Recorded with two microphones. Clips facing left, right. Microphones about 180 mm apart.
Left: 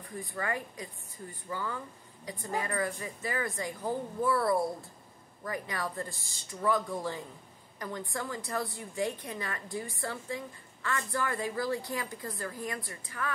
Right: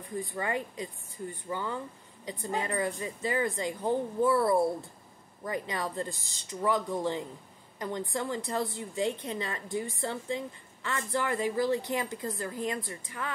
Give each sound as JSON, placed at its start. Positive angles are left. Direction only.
{"t": 0.2, "sound": "a woman's voice", "side_deg": -20}